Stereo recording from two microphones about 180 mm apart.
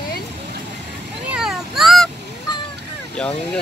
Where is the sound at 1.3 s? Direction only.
5° right (ahead or behind).